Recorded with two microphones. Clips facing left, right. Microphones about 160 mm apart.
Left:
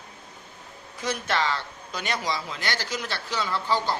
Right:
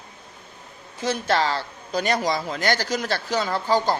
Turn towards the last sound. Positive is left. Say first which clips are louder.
# right 5 dB
turn(degrees=-45)  # may be behind; listen again after turning